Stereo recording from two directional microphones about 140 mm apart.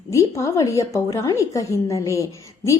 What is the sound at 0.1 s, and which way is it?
A woman's voice, 20° left (ahead or behind).